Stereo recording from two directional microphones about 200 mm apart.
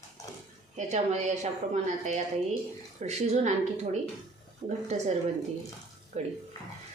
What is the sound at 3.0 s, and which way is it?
A woman's voice, 35° right (ahead or behind).